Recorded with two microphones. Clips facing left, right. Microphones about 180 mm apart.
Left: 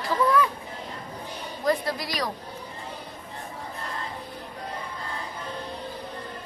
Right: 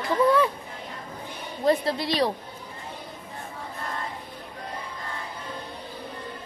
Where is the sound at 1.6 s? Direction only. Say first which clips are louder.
Right 3 dB; 25° right (ahead or behind).